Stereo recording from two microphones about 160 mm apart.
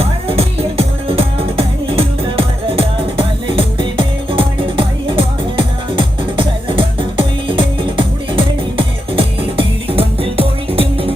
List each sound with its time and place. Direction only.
0.0 s music: 35° right (ahead or behind)